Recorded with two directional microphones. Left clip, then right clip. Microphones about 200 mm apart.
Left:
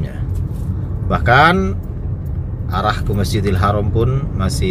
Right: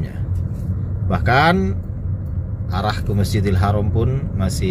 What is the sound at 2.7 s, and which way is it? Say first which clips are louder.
Speech: left 4 dB; 10° right (ahead or behind).